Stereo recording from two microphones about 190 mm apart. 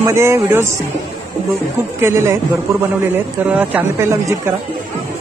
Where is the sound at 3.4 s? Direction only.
10° right (ahead or behind).